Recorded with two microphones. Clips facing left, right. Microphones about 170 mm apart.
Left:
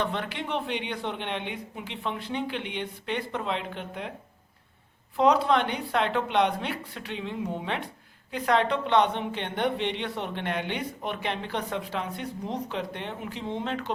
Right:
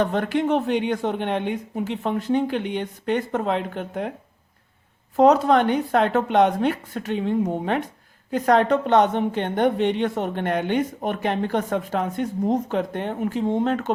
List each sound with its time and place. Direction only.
0.0 s a woman's voice: 45° right (ahead or behind)
5.1 s a woman's voice: 45° right (ahead or behind)